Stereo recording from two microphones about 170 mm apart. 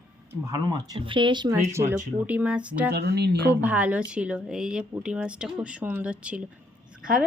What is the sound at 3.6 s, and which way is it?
A woman's voice, 10° right (ahead or behind).